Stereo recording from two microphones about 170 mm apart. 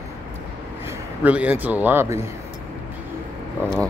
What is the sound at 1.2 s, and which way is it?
Speech, 10° right (ahead or behind).